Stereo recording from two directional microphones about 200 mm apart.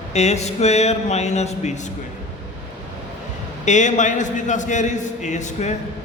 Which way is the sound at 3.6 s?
35° left (ahead or behind).